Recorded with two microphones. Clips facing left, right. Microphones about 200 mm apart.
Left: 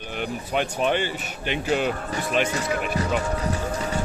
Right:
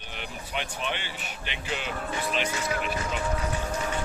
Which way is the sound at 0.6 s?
45° left (ahead or behind).